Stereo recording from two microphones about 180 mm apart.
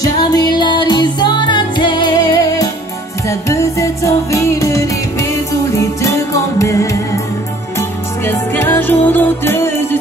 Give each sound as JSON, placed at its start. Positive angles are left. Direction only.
{"t": 0.0, "sound": "music", "side_deg": 20}
{"t": 8.3, "sound": "music", "side_deg": 10}